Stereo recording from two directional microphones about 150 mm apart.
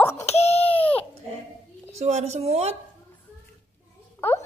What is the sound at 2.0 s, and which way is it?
Speech, 45° right (ahead or behind).